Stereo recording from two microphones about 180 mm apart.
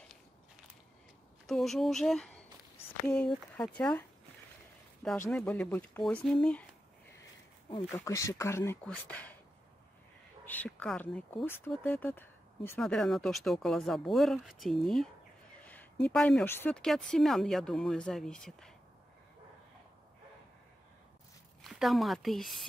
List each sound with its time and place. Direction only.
1.5 s speech: centre (ahead or behind)
5.1 s speech: 10° left (ahead or behind)
7.9 s speech: 15° left (ahead or behind)
10.4 s speech: 10° left (ahead or behind)
21.6 s speech: centre (ahead or behind)